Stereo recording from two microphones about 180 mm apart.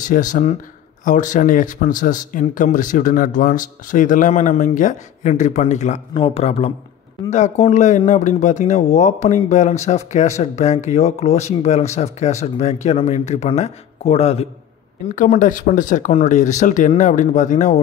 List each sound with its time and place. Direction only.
0.0 s speech: 45° left (ahead or behind)
15.0 s speech: 45° left (ahead or behind)